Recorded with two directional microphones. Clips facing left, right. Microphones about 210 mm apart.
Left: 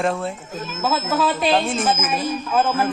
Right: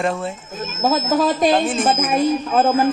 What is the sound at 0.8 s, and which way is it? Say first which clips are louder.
Speech: right 4 dB; 40° right (ahead or behind).